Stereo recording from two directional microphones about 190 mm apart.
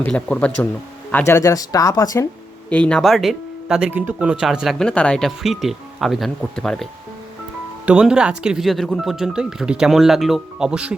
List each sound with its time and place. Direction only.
0.0 s speech: 5° left (ahead or behind)
2.6 s speech: 5° left (ahead or behind)
7.9 s speech: 5° right (ahead or behind)